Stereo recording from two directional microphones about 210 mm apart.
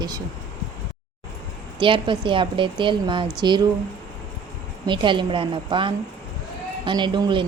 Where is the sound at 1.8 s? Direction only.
25° right (ahead or behind).